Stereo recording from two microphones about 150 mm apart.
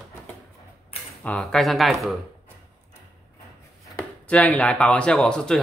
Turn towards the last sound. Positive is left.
turn(degrees=5)  # may be behind; listen again after turning